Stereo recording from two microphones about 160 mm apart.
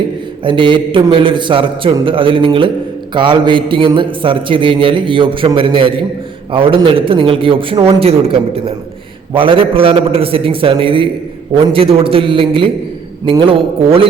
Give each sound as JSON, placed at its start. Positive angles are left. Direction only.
{"t": 0.4, "sound": "a man's voice", "side_deg": -30}